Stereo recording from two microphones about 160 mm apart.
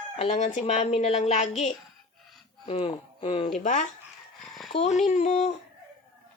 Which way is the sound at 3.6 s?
50° left (ahead or behind).